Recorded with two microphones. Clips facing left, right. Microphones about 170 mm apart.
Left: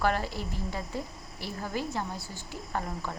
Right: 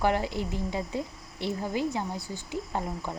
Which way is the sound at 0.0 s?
20° right (ahead or behind).